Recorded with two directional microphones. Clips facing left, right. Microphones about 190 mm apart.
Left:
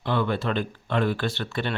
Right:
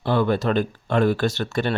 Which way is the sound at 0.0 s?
40° right (ahead or behind).